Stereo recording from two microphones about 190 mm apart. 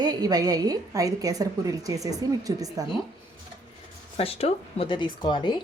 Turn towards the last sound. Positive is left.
turn(degrees=25)  # may be behind; listen again after turning